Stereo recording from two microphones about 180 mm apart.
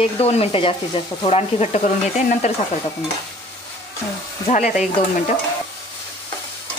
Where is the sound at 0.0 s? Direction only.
35° left (ahead or behind).